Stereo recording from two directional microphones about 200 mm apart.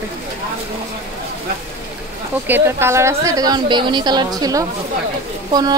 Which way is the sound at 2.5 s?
10° right (ahead or behind).